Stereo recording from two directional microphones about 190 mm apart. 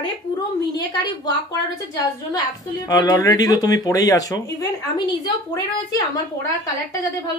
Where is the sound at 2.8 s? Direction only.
20° left (ahead or behind).